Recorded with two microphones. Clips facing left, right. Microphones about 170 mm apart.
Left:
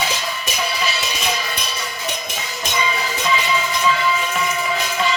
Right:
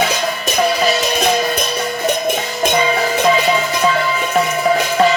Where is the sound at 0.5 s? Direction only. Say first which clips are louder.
Right 10 dB; 50° right (ahead or behind).